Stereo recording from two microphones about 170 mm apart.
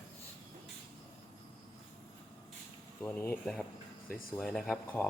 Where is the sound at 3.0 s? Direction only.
10° left (ahead or behind).